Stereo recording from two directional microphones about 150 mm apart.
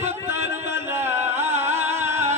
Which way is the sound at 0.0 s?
15° right (ahead or behind).